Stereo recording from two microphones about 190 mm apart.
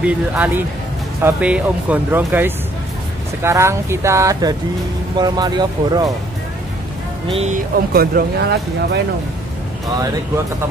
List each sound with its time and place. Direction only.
0.0 s speech: 10° right (ahead or behind)
7.2 s speech: 30° right (ahead or behind)
7.5 s speech: 50° right (ahead or behind)